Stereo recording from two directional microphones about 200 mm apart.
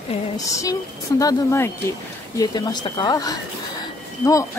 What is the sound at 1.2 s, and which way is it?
A woman's voice, 15° left (ahead or behind).